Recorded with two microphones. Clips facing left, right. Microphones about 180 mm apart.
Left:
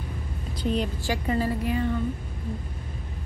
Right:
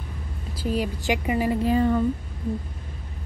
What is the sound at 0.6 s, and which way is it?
A woman's voice, 5° right (ahead or behind).